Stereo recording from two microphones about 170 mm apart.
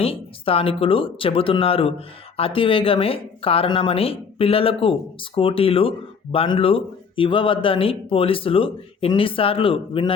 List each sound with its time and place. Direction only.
0.0 s speech: 35° left (ahead or behind)